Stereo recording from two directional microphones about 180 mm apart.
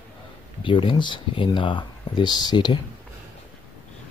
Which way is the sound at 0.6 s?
30° left (ahead or behind).